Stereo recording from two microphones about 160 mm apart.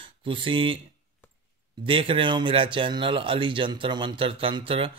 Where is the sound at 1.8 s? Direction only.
35° right (ahead or behind).